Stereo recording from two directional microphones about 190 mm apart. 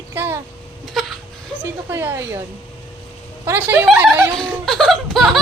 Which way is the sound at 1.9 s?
10° right (ahead or behind).